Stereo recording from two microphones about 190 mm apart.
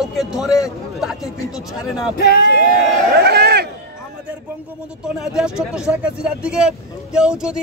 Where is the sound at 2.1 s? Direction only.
60° left (ahead or behind).